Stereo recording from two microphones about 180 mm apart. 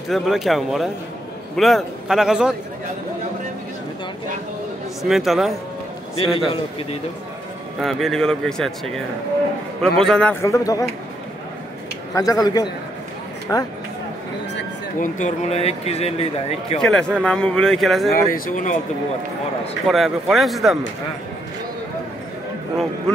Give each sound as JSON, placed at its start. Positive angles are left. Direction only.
{"t": 0.1, "sound": "speech", "side_deg": 0}
{"t": 5.0, "sound": "speech", "side_deg": 0}
{"t": 6.1, "sound": "speech", "side_deg": 30}
{"t": 7.8, "sound": "speech", "side_deg": 0}
{"t": 10.4, "sound": "a man's voice", "side_deg": 20}
{"t": 12.1, "sound": "a man's voice", "side_deg": 20}
{"t": 15.0, "sound": "speech", "side_deg": 40}
{"t": 16.8, "sound": "speech", "side_deg": 5}
{"t": 18.1, "sound": "speech", "side_deg": 50}
{"t": 19.9, "sound": "speech", "side_deg": 0}